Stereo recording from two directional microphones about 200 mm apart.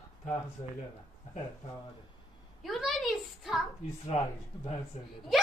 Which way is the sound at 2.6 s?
Centre (ahead or behind).